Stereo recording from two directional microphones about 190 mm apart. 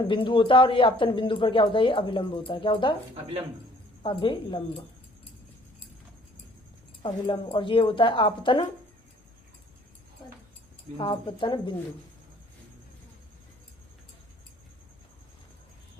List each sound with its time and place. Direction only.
0.0 s speech: 25° left (ahead or behind)
4.0 s speech: 25° left (ahead or behind)
7.0 s speech: 25° left (ahead or behind)
10.9 s speech: 25° left (ahead or behind)